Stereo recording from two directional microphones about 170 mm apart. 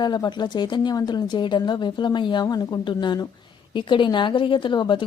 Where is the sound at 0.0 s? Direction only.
25° left (ahead or behind).